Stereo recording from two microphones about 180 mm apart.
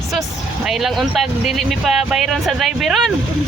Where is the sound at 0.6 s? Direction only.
Centre (ahead or behind).